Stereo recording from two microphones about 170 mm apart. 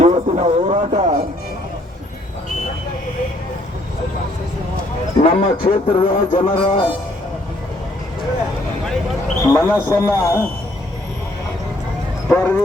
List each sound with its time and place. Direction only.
0.0 s a sound: 40° right (ahead or behind)
5.2 s a man's voice: 35° left (ahead or behind)
9.4 s speech: 15° left (ahead or behind)
12.3 s speech: 15° left (ahead or behind)